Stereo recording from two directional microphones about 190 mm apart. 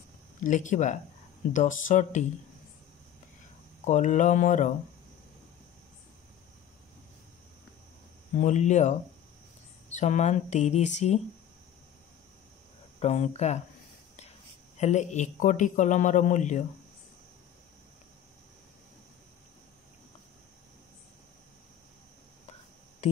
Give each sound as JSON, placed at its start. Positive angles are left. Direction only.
{"t": 0.4, "sound": "a man's voice", "side_deg": 40}
{"t": 3.8, "sound": "a man's voice", "side_deg": 40}
{"t": 8.4, "sound": "a man's voice", "side_deg": 40}
{"t": 13.0, "sound": "a man's voice", "side_deg": 35}
{"t": 14.8, "sound": "a man's voice", "side_deg": 40}